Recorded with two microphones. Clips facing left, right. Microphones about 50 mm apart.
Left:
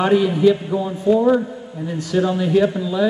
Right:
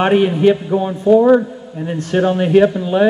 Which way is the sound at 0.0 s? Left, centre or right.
Right.